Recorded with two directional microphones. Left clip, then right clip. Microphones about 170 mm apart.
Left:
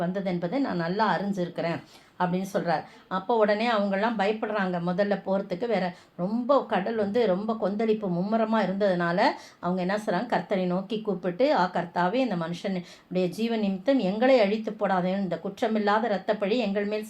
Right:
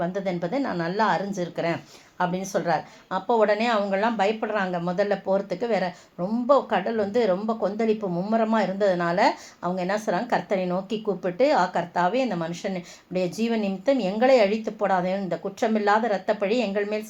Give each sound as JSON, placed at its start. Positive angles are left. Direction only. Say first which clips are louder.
{"t": 0.0, "sound": "a woman's voice", "louder": "right 3 dB", "side_deg": -45}